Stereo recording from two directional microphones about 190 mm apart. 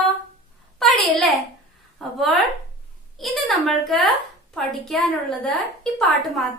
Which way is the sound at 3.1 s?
Centre (ahead or behind).